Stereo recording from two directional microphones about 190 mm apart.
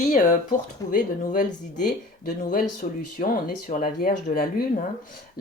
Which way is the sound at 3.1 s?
45° left (ahead or behind).